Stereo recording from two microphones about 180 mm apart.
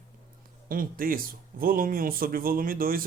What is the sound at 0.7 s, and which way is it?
Speech, 50° right (ahead or behind).